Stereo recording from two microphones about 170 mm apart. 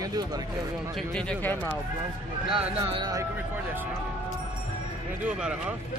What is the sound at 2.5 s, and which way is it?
Speech, 30° right (ahead or behind).